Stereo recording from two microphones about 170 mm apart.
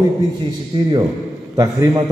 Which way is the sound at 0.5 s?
25° right (ahead or behind).